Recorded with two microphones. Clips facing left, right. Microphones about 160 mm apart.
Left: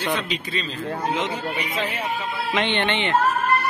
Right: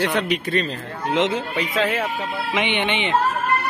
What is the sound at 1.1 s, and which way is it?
Speech, 85° right.